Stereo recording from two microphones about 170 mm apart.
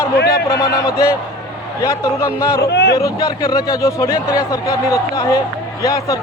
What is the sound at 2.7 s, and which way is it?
Speech, 90° left.